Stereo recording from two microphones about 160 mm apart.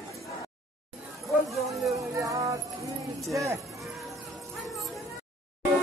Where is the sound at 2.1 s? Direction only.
20° right (ahead or behind).